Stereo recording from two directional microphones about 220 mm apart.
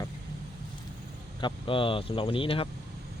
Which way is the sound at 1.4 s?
25° left (ahead or behind).